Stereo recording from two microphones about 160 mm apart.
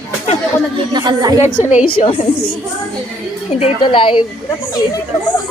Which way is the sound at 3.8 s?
30° left (ahead or behind).